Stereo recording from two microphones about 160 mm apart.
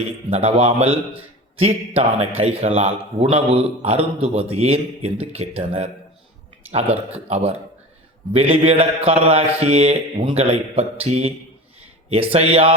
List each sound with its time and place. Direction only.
0.3 s a man's voice: 40° right (ahead or behind)
7.1 s a man's voice: 40° right (ahead or behind)